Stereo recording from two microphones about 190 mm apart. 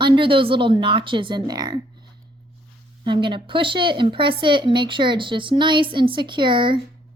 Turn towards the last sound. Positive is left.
turn(degrees=-25)  # may be behind; listen again after turning